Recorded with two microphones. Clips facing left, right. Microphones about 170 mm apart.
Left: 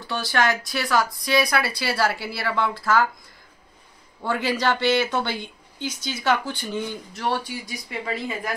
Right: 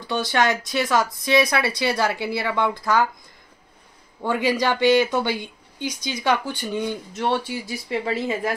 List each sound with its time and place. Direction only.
0.0 s speech: 20° right (ahead or behind)
4.2 s speech: 15° right (ahead or behind)